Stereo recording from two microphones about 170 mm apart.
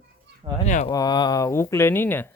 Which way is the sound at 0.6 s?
45° left (ahead or behind).